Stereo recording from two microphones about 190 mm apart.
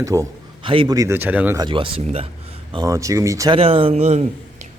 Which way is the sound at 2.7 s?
15° right (ahead or behind).